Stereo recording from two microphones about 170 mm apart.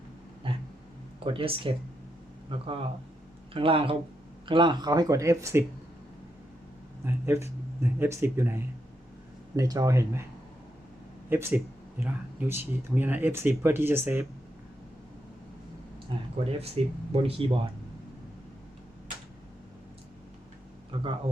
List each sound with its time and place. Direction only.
0.4 s a sound: 30° right (ahead or behind)
1.2 s speech: 30° right (ahead or behind)
7.0 s speech: 15° right (ahead or behind)
11.3 s speech: 15° right (ahead or behind)
16.1 s speech: 30° right (ahead or behind)
20.9 s speech: 30° right (ahead or behind)